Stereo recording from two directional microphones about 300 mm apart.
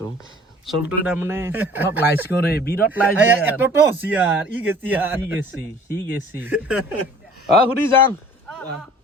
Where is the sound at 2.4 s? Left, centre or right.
Left.